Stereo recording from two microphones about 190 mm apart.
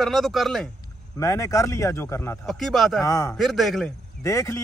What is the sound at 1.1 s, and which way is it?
A man's voice, 15° left (ahead or behind).